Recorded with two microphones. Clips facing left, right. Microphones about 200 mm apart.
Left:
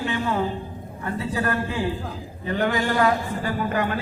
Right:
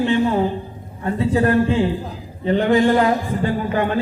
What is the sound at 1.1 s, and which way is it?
A man's voice, 25° right (ahead or behind).